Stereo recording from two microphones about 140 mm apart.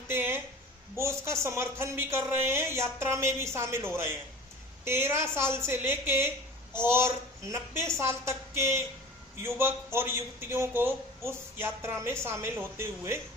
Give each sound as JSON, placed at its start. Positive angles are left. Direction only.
{"t": 0.1, "sound": "music", "side_deg": -15}
{"t": 0.9, "sound": "a man's voice", "side_deg": -20}